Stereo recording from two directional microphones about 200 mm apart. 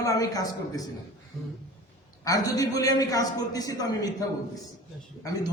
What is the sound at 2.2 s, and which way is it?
A man's voice, 20° left (ahead or behind).